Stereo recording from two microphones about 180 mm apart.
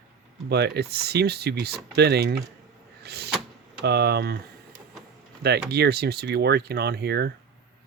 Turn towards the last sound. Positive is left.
turn(degrees=-65)  # may be behind; listen again after turning